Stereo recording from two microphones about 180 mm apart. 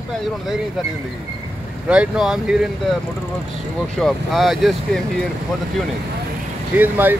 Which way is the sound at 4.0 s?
Centre (ahead or behind).